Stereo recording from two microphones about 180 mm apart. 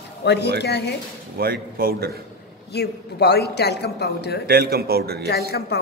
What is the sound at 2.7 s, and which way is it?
Speech, 65° left (ahead or behind).